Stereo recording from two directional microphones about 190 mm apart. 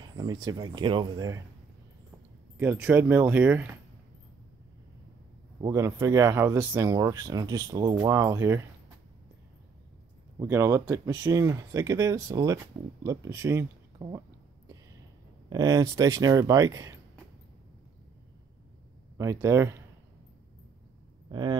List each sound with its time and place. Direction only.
0.0 s speech: 20° right (ahead or behind)
2.5 s speech: 10° right (ahead or behind)
5.6 s speech: 15° right (ahead or behind)
10.4 s speech: 15° right (ahead or behind)
15.5 s speech: 20° right (ahead or behind)
19.1 s speech: 15° right (ahead or behind)
21.3 s speech: 25° right (ahead or behind)